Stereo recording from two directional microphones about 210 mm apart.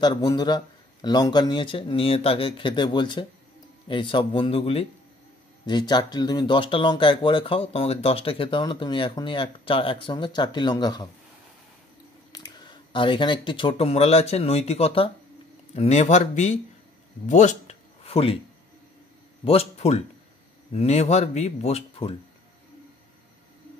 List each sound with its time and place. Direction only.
0.0 s speech: 20° left (ahead or behind)
12.3 s speech: 20° left (ahead or behind)
17.3 s a sound: 35° left (ahead or behind)
19.4 s speech: 30° left (ahead or behind)